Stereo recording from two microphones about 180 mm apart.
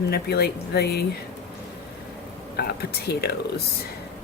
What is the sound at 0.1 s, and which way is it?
Speech, 60° left (ahead or behind).